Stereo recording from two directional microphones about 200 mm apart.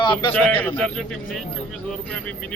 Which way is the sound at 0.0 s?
25° left (ahead or behind).